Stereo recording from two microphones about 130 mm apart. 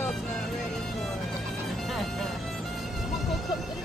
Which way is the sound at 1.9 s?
Centre (ahead or behind).